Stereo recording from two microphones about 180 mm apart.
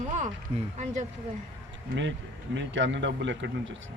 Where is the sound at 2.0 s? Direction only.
85° right.